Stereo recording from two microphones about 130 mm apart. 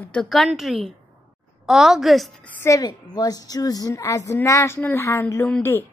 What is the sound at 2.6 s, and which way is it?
A woman's voice, 25° left (ahead or behind).